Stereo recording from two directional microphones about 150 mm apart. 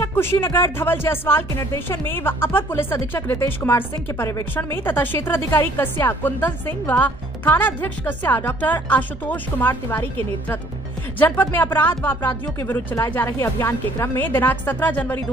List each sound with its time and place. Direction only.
0.0 s speech: 15° left (ahead or behind)
11.1 s speech: 15° left (ahead or behind)